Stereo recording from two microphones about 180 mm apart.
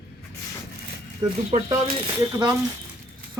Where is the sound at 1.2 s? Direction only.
20° right (ahead or behind).